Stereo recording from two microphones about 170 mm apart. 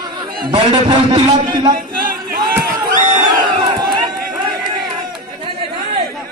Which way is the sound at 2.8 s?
25° right (ahead or behind).